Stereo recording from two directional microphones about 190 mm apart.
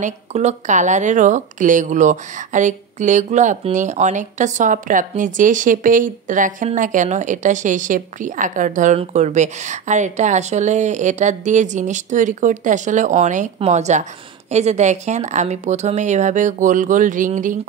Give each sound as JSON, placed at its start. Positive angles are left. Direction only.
{"t": 0.0, "sound": "speech", "side_deg": -35}